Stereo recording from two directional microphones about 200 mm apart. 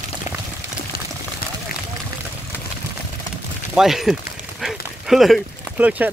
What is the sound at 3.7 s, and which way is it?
Speech, centre (ahead or behind).